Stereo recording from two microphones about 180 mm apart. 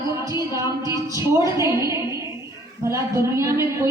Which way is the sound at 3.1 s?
15° right (ahead or behind).